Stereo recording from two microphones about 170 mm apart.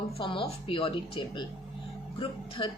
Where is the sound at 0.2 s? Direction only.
30° left (ahead or behind).